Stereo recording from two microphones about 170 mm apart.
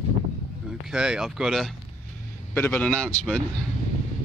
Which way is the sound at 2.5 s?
10° left (ahead or behind).